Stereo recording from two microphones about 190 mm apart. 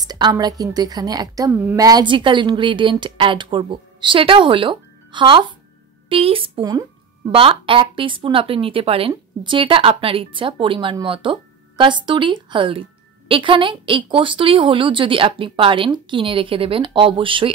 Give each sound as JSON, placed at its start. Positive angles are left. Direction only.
{"t": 0.0, "sound": "speech", "side_deg": -20}